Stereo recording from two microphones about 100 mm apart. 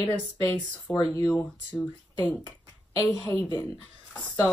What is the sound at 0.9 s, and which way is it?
Speech, 35° left (ahead or behind).